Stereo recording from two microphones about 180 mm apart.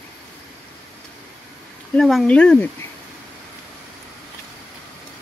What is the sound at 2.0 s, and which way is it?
Speech, centre (ahead or behind).